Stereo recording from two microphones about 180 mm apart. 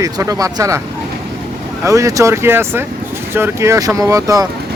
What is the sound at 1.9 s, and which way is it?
Speech, 20° right (ahead or behind).